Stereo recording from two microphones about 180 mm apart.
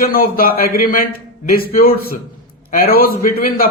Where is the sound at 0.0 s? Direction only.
55° left (ahead or behind).